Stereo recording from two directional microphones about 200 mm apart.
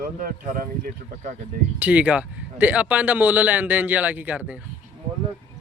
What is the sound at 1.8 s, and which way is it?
A man's voice, 5° right (ahead or behind).